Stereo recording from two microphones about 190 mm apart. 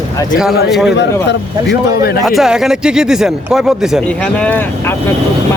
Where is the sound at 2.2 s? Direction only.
Centre (ahead or behind).